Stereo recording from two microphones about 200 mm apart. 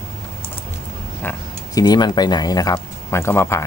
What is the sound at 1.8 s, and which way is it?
Speech, 20° left (ahead or behind).